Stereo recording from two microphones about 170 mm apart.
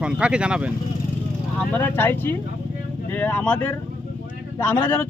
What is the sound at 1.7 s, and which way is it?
A man's voice, 10° left (ahead or behind).